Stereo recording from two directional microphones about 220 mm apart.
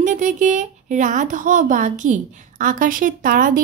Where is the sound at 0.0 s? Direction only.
35° right (ahead or behind).